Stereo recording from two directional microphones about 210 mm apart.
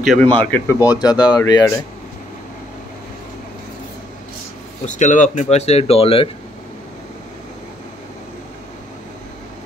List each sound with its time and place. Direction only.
0.0 s speech: centre (ahead or behind); by 1.7 s 20° left (ahead or behind)
4.8 s speech: 35° left (ahead or behind)